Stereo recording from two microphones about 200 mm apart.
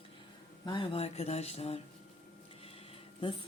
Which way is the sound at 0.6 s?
25° left (ahead or behind).